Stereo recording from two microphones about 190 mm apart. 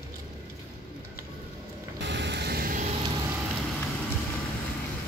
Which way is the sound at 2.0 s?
65° right (ahead or behind).